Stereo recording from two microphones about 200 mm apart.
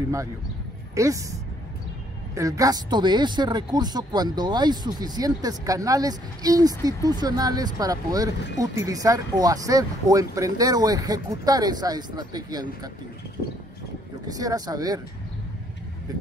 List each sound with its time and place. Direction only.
0.9 s speech: 15° right (ahead or behind)
14.2 s speech: 20° right (ahead or behind)